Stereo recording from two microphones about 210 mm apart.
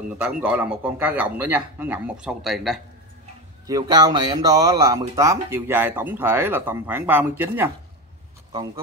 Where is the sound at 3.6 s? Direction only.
20° right (ahead or behind).